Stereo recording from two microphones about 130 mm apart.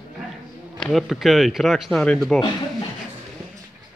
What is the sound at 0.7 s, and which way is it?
Speech, centre (ahead or behind).